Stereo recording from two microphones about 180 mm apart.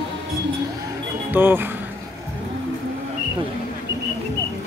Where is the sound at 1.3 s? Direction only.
10° right (ahead or behind).